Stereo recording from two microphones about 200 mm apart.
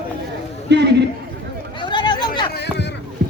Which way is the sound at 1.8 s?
25° left (ahead or behind).